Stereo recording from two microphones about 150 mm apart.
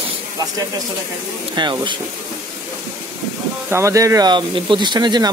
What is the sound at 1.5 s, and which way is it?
Speech, 30° right (ahead or behind).